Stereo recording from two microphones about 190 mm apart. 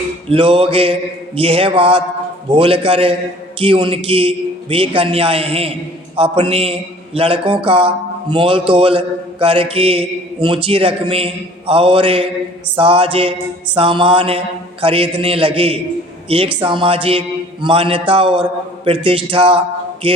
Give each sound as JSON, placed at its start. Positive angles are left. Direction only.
{"t": 0.3, "sound": "a man's voice", "side_deg": -30}